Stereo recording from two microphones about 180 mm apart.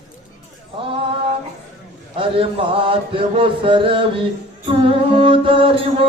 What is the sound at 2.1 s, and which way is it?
Chant, 30° right (ahead or behind).